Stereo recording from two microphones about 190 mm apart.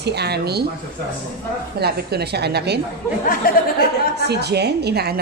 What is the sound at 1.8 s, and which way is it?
A woman's voice, 60° right (ahead or behind).